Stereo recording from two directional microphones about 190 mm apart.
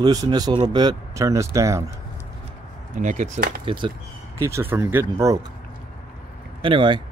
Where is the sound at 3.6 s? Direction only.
25° right (ahead or behind).